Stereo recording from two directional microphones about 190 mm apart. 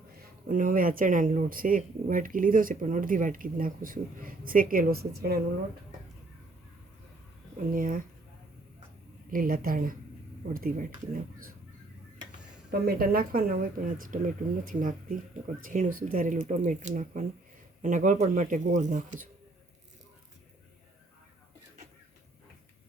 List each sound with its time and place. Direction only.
0.4 s speech: 45° right (ahead or behind)
7.7 s speech: 45° right (ahead or behind)
9.3 s speech: 50° right (ahead or behind)
12.8 s speech: 50° right (ahead or behind)